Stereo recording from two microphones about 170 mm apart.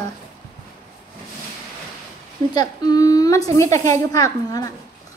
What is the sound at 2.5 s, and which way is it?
A woman's voice, 20° left (ahead or behind).